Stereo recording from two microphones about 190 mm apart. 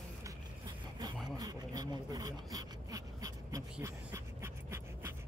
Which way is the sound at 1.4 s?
20° right (ahead or behind).